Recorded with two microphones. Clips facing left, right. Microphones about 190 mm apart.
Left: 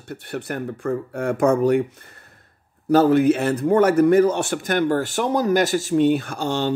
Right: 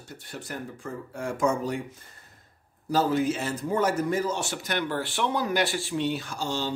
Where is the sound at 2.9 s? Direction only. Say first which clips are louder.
Left 9 dB; 60° left (ahead or behind).